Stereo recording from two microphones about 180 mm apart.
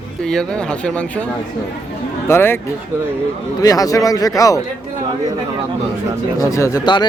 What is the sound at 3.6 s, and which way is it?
Speech, 20° left (ahead or behind).